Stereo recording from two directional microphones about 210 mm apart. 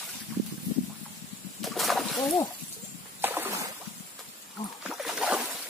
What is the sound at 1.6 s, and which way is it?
Splash, centre (ahead or behind).